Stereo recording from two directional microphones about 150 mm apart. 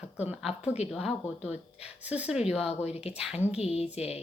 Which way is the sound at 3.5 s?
45° left (ahead or behind).